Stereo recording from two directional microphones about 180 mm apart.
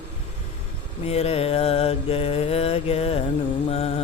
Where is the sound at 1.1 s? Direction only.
35° left (ahead or behind).